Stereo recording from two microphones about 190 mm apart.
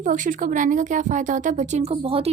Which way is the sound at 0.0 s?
45° right (ahead or behind).